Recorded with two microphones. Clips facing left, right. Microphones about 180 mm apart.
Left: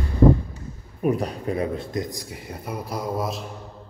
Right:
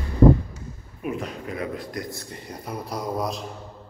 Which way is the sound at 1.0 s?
35° left (ahead or behind).